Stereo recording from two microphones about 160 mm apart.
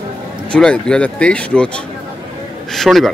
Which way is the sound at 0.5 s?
5° left (ahead or behind).